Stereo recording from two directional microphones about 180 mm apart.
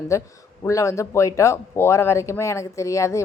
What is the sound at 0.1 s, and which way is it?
Speech, 15° left (ahead or behind).